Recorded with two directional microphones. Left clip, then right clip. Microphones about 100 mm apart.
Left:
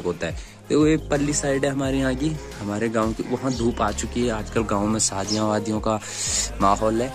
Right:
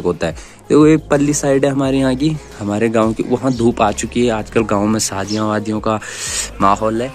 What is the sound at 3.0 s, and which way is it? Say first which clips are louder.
Speech: right 9 dB; 5° right (ahead or behind).